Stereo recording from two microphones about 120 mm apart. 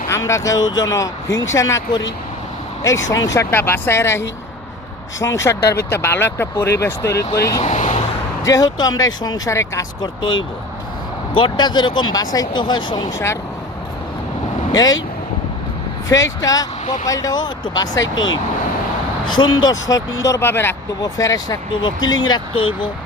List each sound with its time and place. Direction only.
0.1 s speech: 25° left (ahead or behind)
2.8 s speech: 30° left (ahead or behind)
5.2 s speech: 25° left (ahead or behind)
7.6 s vehicle: 85° left
8.4 s speech: 30° left (ahead or behind)
10.0 s speech: 40° left (ahead or behind)
11.3 s speech: 40° left (ahead or behind)
14.7 s speech: 30° left (ahead or behind)
16.0 s speech: 25° left (ahead or behind)
16.8 s speech: 90° left
17.1 s speech: 30° left (ahead or behind)
19.2 s speech: 40° left (ahead or behind); by 20.7 s 20° left (ahead or behind)
21.0 s speech: 30° left (ahead or behind)
21.7 s speech: 40° left (ahead or behind)